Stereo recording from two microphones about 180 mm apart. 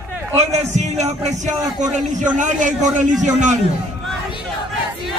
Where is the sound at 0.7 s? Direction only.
40° right (ahead or behind).